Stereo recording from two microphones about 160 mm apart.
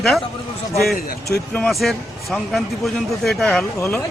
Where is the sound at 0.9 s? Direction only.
70° left (ahead or behind).